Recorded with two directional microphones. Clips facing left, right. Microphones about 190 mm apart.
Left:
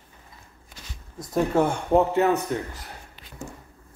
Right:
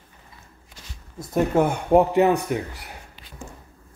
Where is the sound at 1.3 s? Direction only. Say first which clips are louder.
Right 2 dB; 10° right (ahead or behind).